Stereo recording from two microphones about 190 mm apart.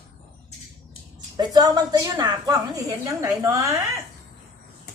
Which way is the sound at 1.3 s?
20° right (ahead or behind).